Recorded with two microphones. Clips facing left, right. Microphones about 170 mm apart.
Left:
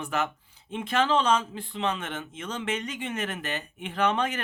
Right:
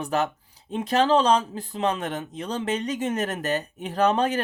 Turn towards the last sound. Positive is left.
turn(degrees=-35)  # may be behind; listen again after turning